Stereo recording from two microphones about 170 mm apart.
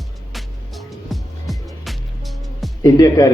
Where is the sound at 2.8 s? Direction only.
20° left (ahead or behind).